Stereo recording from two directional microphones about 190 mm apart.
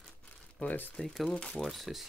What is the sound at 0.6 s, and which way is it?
Speech, 10° left (ahead or behind).